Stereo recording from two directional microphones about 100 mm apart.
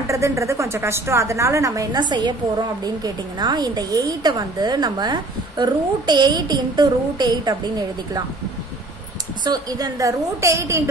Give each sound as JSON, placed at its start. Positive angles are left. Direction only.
{"t": 0.0, "sound": "a woman's voice", "side_deg": -30}
{"t": 2.0, "sound": "a woman's voice", "side_deg": -50}
{"t": 9.4, "sound": "a woman's voice", "side_deg": -40}